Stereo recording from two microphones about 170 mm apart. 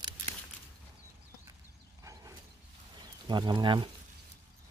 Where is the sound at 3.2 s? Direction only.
25° right (ahead or behind).